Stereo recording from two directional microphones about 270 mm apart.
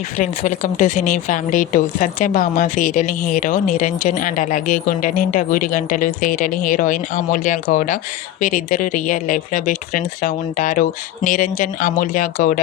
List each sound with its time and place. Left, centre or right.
0.2 s speech: left